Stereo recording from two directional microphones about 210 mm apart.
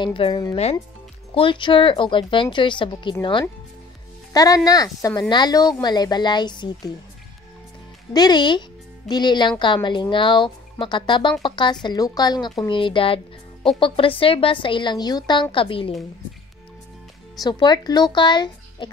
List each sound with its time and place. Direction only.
0.0 s speech: 25° left (ahead or behind)
8.1 s speech: 20° left (ahead or behind)
17.4 s speech: 20° left (ahead or behind)